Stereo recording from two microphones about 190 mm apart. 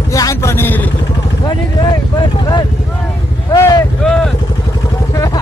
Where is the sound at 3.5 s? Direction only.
15° left (ahead or behind).